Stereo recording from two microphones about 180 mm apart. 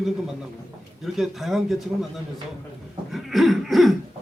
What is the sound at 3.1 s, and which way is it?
Cough, centre (ahead or behind).